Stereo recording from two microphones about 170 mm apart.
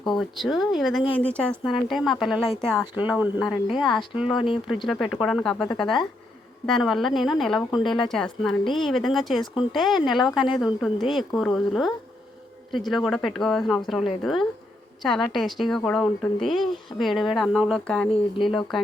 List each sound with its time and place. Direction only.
0.2 s speech: centre (ahead or behind)
4.4 s speech: 30° left (ahead or behind)
4.6 s speech: centre (ahead or behind)
8.6 s speech: 30° left (ahead or behind)
8.9 s speech: centre (ahead or behind)
18.1 s speech: 30° left (ahead or behind)